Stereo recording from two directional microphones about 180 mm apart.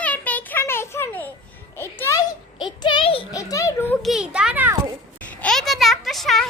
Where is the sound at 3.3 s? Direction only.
20° left (ahead or behind).